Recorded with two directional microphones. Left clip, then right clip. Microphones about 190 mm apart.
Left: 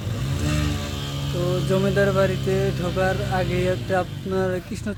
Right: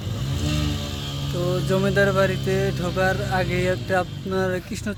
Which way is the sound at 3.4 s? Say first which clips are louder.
Even; centre (ahead or behind).